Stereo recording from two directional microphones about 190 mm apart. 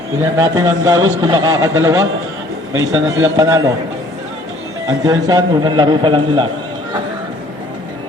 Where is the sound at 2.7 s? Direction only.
90° right.